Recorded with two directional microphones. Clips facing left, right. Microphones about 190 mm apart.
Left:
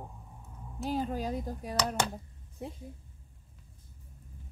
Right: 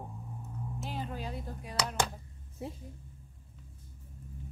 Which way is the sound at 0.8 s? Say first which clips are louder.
Left 8 dB; 40° left (ahead or behind).